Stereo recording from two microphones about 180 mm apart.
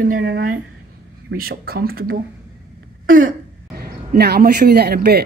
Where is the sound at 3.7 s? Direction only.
60° right (ahead or behind).